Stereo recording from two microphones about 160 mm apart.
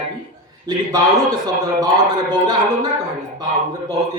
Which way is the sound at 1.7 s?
25° right (ahead or behind).